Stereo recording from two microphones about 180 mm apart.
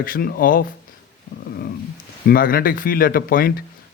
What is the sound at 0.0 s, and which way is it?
Speech, 55° left (ahead or behind).